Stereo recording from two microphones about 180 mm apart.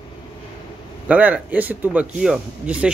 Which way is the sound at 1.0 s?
10° right (ahead or behind).